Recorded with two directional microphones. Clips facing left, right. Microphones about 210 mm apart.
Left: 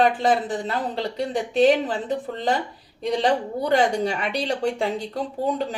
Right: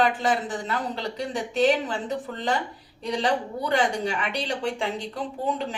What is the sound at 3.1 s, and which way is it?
Speech, 35° left (ahead or behind).